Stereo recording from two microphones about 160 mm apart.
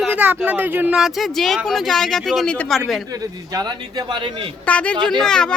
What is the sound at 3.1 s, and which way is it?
A man's voice, 20° right (ahead or behind).